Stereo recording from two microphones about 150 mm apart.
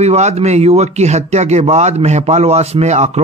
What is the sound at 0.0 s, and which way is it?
Speech, 45° right (ahead or behind).